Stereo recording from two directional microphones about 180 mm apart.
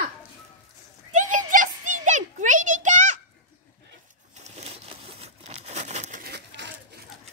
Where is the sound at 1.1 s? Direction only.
45° right (ahead or behind).